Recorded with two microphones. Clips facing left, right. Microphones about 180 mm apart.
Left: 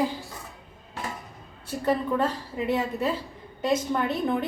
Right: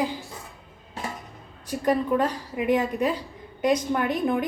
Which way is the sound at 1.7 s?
15° right (ahead or behind).